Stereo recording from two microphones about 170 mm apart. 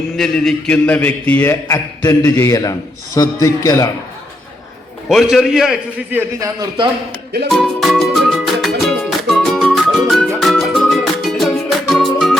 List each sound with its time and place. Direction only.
0.2 s a man's voice: 5° left (ahead or behind)
5.0 s a man's voice: centre (ahead or behind)
6.6 s a man's voice: 25° right (ahead or behind)
7.5 s music: centre (ahead or behind)